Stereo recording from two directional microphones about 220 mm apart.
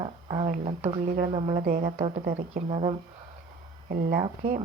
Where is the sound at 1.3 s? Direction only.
25° right (ahead or behind).